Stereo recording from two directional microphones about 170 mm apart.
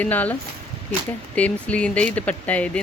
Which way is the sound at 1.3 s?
10° left (ahead or behind).